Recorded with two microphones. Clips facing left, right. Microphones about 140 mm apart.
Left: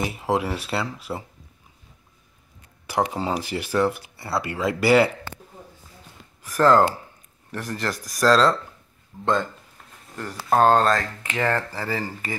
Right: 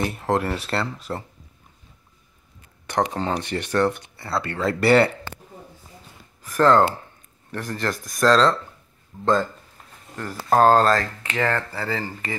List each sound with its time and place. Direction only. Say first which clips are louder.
0.0 s speech: right 1 dB; 5° left (ahead or behind)
2.9 s speech: right 1 dB; 10° left (ahead or behind)
4.2 s speech: even; 20° left (ahead or behind)
4.5 s speech: right 1 dB; 5° left (ahead or behind)
6.4 s speech: even; centre (ahead or behind)
11.2 s speech: left 2 dB; 15° left (ahead or behind)